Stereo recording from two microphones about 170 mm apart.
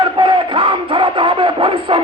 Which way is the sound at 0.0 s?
30° right (ahead or behind).